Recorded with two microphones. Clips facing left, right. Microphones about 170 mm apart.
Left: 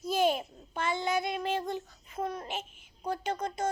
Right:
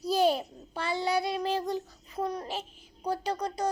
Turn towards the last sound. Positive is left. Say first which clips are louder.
# right 2 dB
turn(degrees=-35)  # may be behind; listen again after turning